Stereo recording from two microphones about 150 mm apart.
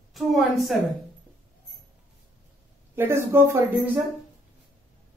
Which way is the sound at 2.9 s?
15° right (ahead or behind).